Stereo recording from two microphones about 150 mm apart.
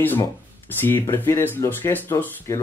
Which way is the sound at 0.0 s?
15° left (ahead or behind).